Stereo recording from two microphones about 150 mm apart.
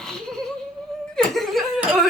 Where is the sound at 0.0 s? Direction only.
5° left (ahead or behind).